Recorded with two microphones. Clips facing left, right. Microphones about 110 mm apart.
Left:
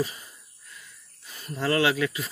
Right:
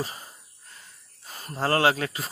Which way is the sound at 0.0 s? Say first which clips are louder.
Left 4 dB; 35° right (ahead or behind).